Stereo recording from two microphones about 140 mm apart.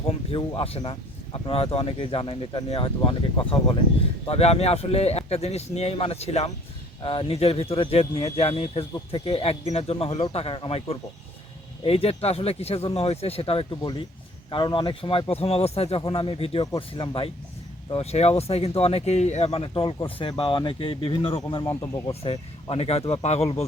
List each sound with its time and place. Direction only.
0.1 s speech: 40° left (ahead or behind)
8.9 s speech: 35° left (ahead or behind)
9.3 s speech: 45° left (ahead or behind)
21.7 s speech: 15° left (ahead or behind)
22.7 s speech: 50° left (ahead or behind)